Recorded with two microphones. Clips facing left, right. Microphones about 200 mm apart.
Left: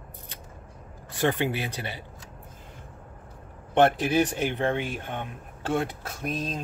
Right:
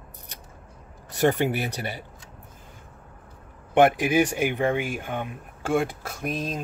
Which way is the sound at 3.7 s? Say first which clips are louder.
Right 2 dB; 10° right (ahead or behind).